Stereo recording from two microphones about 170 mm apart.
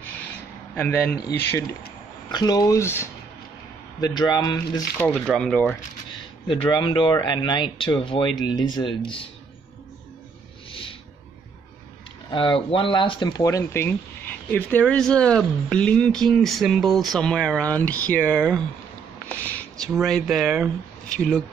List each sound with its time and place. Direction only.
0.7 s speech: 10° left (ahead or behind)
2.3 s speech: 25° left (ahead or behind)
4.9 s speech: 10° left (ahead or behind)
6.4 s speech: 30° left (ahead or behind)
10.7 s a sound: 30° left (ahead or behind)
12.3 s speech: 30° left (ahead or behind); by 18.6 s 5° left (ahead or behind)
19.9 s speech: centre (ahead or behind)